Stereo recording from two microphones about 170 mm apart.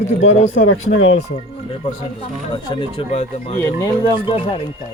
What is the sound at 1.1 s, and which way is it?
Speech, 35° left (ahead or behind).